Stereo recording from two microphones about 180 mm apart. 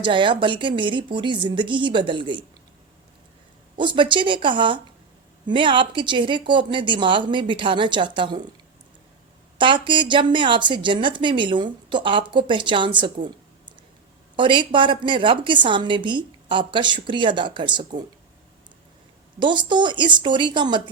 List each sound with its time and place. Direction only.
0.0 s speech: 25° right (ahead or behind)
3.8 s speech: 25° right (ahead or behind)
9.6 s speech: 25° right (ahead or behind)
14.3 s speech: 25° right (ahead or behind)
19.4 s speech: 25° right (ahead or behind)